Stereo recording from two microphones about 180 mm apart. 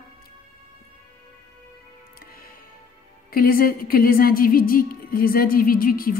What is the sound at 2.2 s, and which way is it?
Music, 55° left (ahead or behind).